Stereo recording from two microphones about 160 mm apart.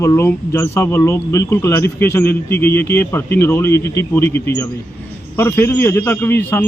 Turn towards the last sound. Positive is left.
turn(degrees=15)  # may be behind; listen again after turning